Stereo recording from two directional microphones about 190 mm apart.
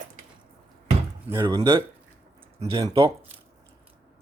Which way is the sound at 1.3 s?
20° right (ahead or behind).